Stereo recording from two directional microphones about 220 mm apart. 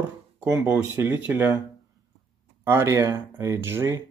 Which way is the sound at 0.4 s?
10° right (ahead or behind).